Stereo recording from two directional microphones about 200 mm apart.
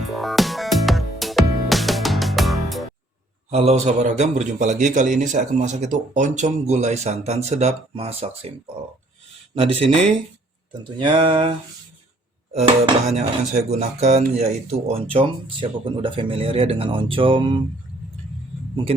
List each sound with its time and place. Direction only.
0.1 s music: centre (ahead or behind)
3.5 s a man's voice: 35° right (ahead or behind)
9.6 s speech: 25° right (ahead or behind)
11.0 s speech: 25° right (ahead or behind)
12.5 s a man's voice: 30° right (ahead or behind)